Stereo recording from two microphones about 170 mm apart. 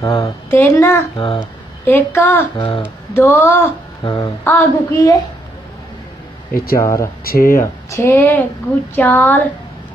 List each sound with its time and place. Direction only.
0.0 s speech: 20° left (ahead or behind)
1.1 s humming: 30° left (ahead or behind)
1.9 s speech: 15° left (ahead or behind)
2.5 s humming: 25° left (ahead or behind)
2.8 s speech: 15° left (ahead or behind)
4.0 s a sound: 25° left (ahead or behind)
4.5 s speech: 10° left (ahead or behind)
6.5 s speech: 60° left (ahead or behind)
6.8 s speech: 15° left (ahead or behind)
7.2 s speech: 60° left (ahead or behind)
7.5 s speech: 15° left (ahead or behind)